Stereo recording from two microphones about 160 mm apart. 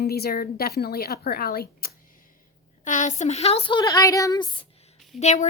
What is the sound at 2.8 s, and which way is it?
Speech, 50° left (ahead or behind).